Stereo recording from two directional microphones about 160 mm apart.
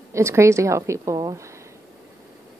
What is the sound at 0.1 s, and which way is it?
Speech, 20° right (ahead or behind).